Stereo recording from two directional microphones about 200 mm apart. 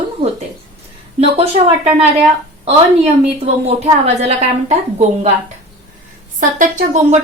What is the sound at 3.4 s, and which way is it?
Speech, 30° right (ahead or behind).